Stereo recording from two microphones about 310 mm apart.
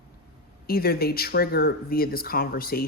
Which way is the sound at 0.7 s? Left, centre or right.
Left.